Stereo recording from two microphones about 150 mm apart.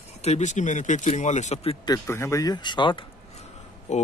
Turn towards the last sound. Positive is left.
turn(degrees=50)  # may be behind; listen again after turning